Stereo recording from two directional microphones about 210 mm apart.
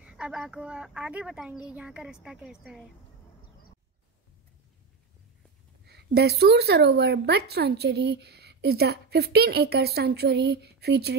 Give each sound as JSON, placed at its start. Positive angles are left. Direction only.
{"t": 0.0, "sound": "speech", "side_deg": -5}
{"t": 5.9, "sound": "a woman's voice", "side_deg": -50}